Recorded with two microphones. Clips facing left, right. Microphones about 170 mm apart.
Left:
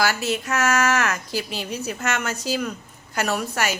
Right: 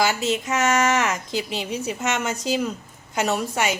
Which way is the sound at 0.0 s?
20° right (ahead or behind).